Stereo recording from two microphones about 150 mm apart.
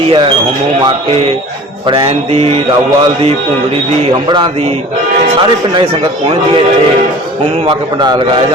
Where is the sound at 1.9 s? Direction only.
40° right (ahead or behind).